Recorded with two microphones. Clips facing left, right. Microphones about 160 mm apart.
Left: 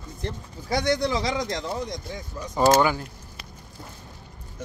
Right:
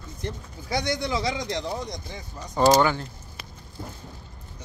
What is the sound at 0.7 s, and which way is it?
Speech, 50° left (ahead or behind).